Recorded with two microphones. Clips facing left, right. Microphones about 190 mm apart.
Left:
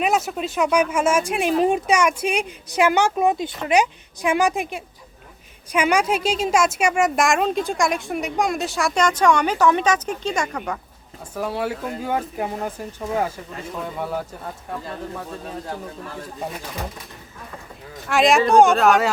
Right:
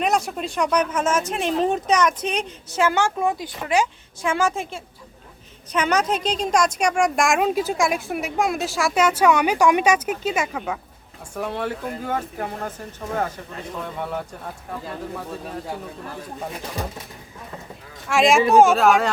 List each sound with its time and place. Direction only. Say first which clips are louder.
0.0 s a woman's voice: left 1 dB; 5° left (ahead or behind)
13.7 s a woman's voice: left 2 dB; 5° left (ahead or behind)
18.1 s a woman's voice: even; centre (ahead or behind)